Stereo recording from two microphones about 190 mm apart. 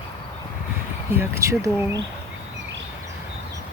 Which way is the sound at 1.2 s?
15° right (ahead or behind).